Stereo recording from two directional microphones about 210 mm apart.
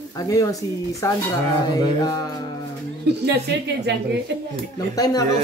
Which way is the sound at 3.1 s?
55° right (ahead or behind).